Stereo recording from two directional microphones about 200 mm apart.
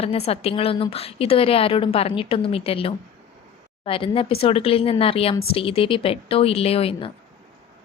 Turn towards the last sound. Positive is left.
turn(degrees=30)  # may be behind; listen again after turning